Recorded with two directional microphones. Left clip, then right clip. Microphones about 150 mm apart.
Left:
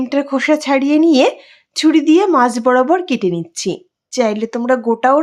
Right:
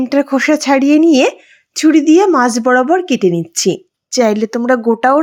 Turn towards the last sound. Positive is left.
turn(degrees=-20)  # may be behind; listen again after turning